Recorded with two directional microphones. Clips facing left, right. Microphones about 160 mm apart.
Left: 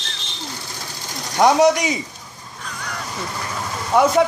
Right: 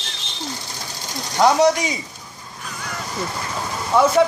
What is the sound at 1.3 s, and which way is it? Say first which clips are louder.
Speech: left 1 dB; 15° left (ahead or behind).